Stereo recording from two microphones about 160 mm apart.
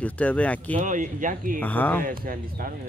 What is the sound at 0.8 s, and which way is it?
Speech, 55° right (ahead or behind).